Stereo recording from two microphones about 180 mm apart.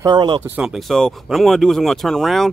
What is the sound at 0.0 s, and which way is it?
Speech, 25° right (ahead or behind).